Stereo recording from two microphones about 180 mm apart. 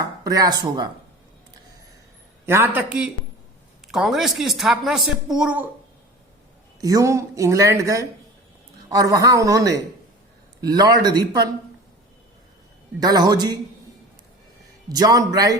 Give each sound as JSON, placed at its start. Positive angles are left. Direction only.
{"t": 0.0, "sound": "speech", "side_deg": -20}
{"t": 2.5, "sound": "speech", "side_deg": -10}
{"t": 6.8, "sound": "a man's voice", "side_deg": -20}
{"t": 13.0, "sound": "a man's voice", "side_deg": -20}
{"t": 14.8, "sound": "a man's voice", "side_deg": -20}